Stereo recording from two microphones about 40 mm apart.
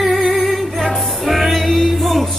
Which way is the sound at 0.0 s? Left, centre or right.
Centre.